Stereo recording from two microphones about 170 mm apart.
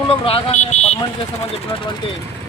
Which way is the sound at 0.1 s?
35° left (ahead or behind).